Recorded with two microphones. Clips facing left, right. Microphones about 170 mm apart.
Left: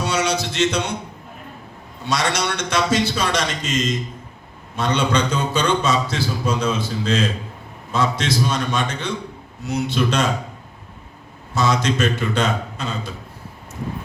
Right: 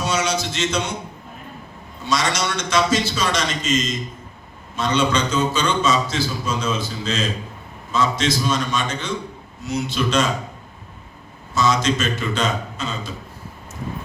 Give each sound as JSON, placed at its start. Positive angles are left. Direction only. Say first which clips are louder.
{"t": 0.0, "sound": "a sound", "louder": "left 1 dB", "side_deg": 60}
{"t": 2.0, "sound": "a man's voice", "louder": "even", "side_deg": 60}
{"t": 11.5, "sound": "a man's voice", "louder": "even", "side_deg": 60}